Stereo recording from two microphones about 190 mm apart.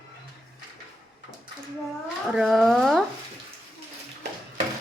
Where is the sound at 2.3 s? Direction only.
Centre (ahead or behind).